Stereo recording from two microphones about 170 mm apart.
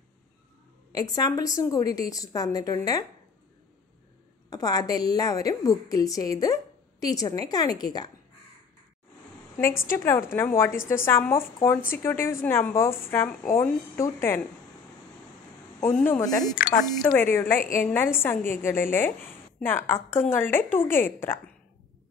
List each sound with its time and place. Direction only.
0.9 s a woman's voice: 20° left (ahead or behind)
4.5 s a woman's voice: 20° left (ahead or behind)
9.6 s a woman's voice: 15° left (ahead or behind)
16.0 s a woman's voice: 15° left (ahead or behind)
16.5 s speech: 60° left (ahead or behind)
17.0 s a woman's voice: 10° left (ahead or behind)
17.6 s a woman's voice: 55° left (ahead or behind)
17.8 s a woman's voice: 15° left (ahead or behind)